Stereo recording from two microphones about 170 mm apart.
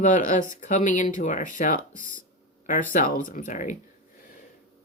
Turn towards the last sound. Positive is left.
turn(degrees=50)  # may be behind; listen again after turning